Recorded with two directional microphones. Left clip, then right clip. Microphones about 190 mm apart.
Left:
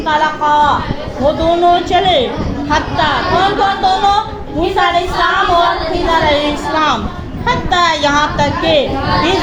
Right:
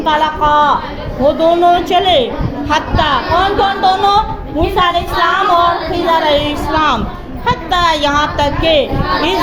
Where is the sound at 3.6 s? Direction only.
35° right (ahead or behind).